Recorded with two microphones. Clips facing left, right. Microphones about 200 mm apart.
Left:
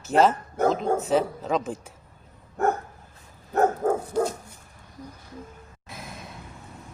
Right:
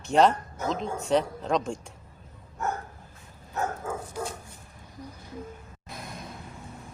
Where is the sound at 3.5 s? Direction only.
55° left (ahead or behind).